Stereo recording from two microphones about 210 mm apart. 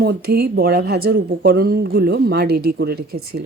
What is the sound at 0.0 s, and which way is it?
A woman's voice, 50° right (ahead or behind).